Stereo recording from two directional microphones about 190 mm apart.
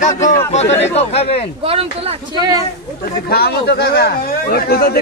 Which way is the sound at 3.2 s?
55° left (ahead or behind).